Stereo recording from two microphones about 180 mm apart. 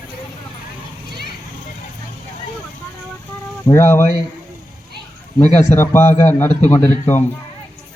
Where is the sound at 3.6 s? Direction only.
15° left (ahead or behind).